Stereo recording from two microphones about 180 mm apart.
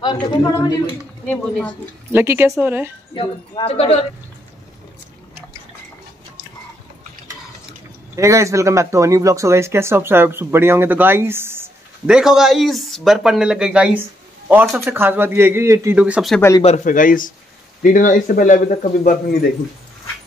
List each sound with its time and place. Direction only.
0.0 s a woman's voice: 25° left (ahead or behind)
1.2 s speech: 10° left (ahead or behind)
2.1 s speech: 15° right (ahead or behind)
3.2 s a woman's voice: 30° left (ahead or behind)
8.2 s speech: 15° right (ahead or behind)
16.3 s speech: 15° left (ahead or behind)
16.6 s speech: 40° left (ahead or behind)